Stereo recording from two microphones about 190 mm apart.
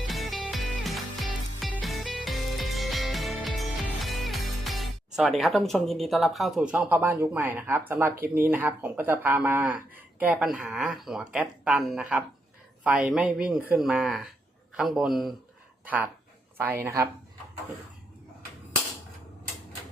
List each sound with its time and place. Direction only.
0.1 s music: centre (ahead or behind)
6.7 s speech: 10° right (ahead or behind)
16.8 s speech: 15° right (ahead or behind)